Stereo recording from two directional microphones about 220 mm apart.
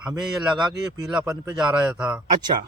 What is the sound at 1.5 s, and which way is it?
Speech, centre (ahead or behind).